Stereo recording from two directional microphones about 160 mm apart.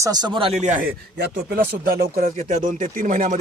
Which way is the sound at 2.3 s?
50° right (ahead or behind).